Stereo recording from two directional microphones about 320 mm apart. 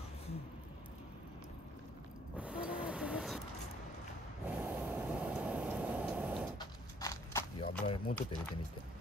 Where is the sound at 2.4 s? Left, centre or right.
Centre.